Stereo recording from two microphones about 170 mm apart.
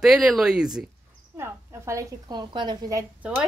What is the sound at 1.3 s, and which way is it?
A woman's voice, 15° right (ahead or behind).